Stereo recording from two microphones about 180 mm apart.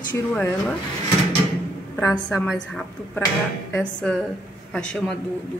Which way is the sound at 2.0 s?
15° left (ahead or behind).